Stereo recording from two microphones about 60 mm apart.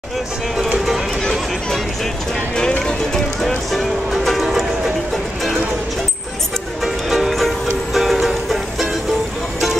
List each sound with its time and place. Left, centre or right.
0.7 s music: centre
3.4 s music: centre
6.8 s music: centre